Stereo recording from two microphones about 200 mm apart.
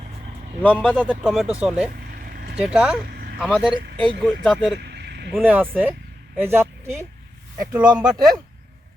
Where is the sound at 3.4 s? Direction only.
5° right (ahead or behind).